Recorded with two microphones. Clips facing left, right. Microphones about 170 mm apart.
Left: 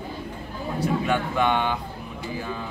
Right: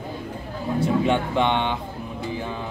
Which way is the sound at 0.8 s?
25° right (ahead or behind).